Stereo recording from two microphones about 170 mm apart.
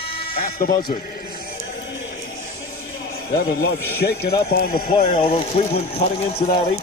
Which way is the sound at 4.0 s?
70° left (ahead or behind).